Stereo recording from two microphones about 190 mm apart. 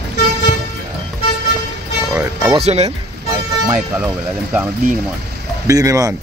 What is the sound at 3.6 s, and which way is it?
Speech, 10° right (ahead or behind).